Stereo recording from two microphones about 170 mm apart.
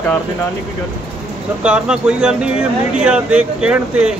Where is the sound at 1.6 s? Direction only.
5° right (ahead or behind).